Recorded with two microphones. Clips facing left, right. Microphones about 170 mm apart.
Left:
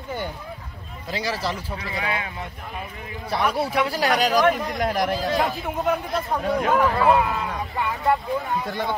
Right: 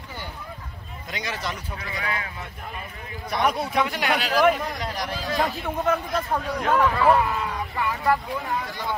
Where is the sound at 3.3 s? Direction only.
30° left (ahead or behind); by 5.1 s 50° left (ahead or behind).